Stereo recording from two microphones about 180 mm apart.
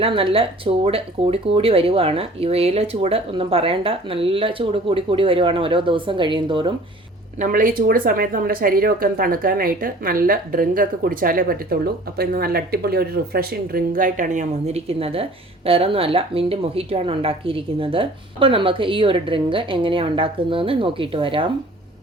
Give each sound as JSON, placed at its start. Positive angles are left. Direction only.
{"t": 0.0, "sound": "speech", "side_deg": -30}
{"t": 7.3, "sound": "speech", "side_deg": -50}